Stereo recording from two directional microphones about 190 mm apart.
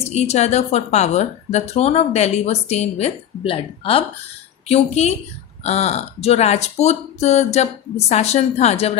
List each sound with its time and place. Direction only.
0.0 s a woman's voice: 35° left (ahead or behind)